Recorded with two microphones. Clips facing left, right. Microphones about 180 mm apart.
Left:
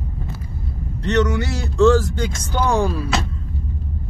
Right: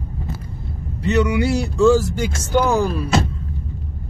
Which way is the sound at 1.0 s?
10° right (ahead or behind).